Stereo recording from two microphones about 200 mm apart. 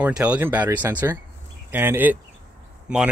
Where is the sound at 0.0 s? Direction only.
5° right (ahead or behind).